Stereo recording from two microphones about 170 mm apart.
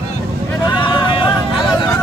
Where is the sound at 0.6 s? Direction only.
25° left (ahead or behind).